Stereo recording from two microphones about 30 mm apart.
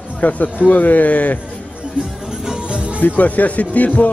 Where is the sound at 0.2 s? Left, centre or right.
Left.